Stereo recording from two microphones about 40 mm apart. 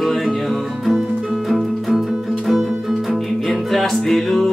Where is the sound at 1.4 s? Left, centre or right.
Centre.